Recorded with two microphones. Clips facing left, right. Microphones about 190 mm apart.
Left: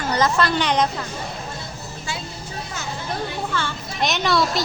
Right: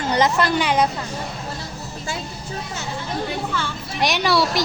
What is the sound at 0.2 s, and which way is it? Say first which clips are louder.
Speech: right 1 dB; 15° right (ahead or behind).